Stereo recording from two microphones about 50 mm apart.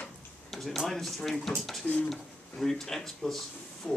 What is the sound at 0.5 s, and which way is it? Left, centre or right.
Speech, centre.